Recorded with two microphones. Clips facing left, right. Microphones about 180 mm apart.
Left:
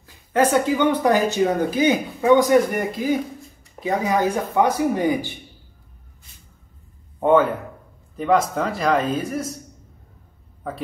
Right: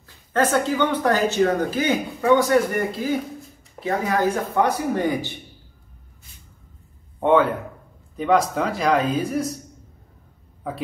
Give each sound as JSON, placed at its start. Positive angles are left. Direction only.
{"t": 0.0, "sound": "speech", "side_deg": 10}
{"t": 7.2, "sound": "a man's voice", "side_deg": 0}
{"t": 10.6, "sound": "speech", "side_deg": 0}